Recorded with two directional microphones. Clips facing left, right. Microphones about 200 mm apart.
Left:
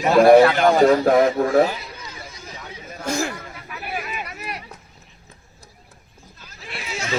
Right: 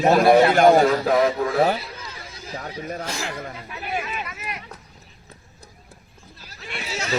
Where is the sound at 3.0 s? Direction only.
45° left (ahead or behind).